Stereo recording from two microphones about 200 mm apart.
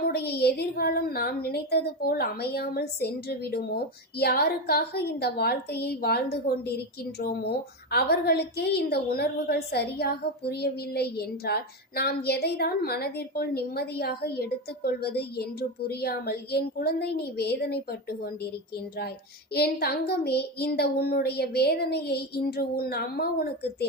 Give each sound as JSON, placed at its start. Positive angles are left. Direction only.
{"t": 0.0, "sound": "a woman's voice", "side_deg": 55}
{"t": 19.5, "sound": "a woman's voice", "side_deg": 50}